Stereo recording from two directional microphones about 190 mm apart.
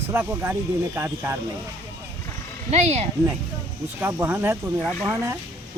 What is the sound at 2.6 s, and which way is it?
Speech, 35° right (ahead or behind).